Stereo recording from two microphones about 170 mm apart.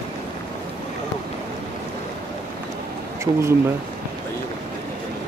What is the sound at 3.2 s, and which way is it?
Speech, 15° right (ahead or behind).